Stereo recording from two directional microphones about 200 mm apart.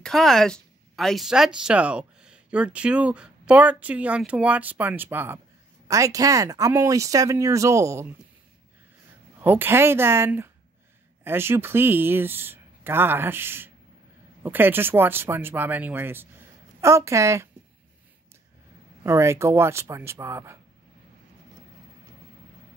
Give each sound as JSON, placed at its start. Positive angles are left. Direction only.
{"t": 0.0, "sound": "speech", "side_deg": 0}
{"t": 9.4, "sound": "speech", "side_deg": -10}
{"t": 19.0, "sound": "speech", "side_deg": -15}